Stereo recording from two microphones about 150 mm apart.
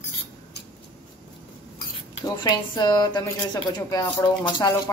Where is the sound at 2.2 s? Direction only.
25° left (ahead or behind).